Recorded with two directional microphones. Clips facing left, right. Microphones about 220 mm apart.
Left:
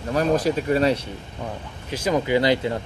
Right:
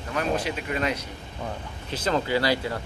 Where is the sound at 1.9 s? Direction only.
10° left (ahead or behind).